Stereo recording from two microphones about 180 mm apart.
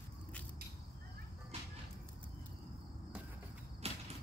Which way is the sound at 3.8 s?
35° right (ahead or behind).